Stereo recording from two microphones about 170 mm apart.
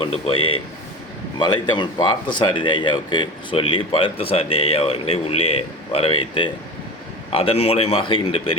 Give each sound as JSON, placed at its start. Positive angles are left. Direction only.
{"t": 0.0, "sound": "speech", "side_deg": 35}